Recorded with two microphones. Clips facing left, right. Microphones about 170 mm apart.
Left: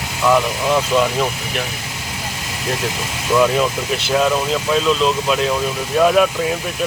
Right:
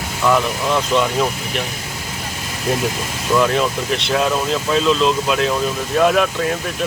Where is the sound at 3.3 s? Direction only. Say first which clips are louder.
Left 1 dB; 5° left (ahead or behind).